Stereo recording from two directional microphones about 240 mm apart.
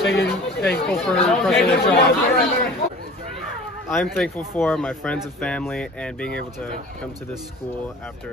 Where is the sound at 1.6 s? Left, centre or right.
Left.